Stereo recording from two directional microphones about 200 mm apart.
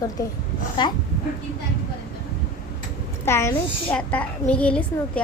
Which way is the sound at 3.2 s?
15° left (ahead or behind).